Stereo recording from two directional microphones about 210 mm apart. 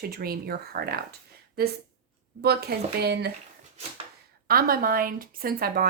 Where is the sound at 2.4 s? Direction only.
50° right (ahead or behind).